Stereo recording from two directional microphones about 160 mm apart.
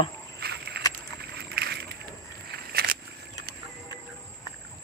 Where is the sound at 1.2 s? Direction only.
90° right.